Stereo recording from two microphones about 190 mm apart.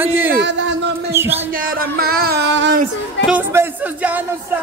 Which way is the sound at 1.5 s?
50° right (ahead or behind).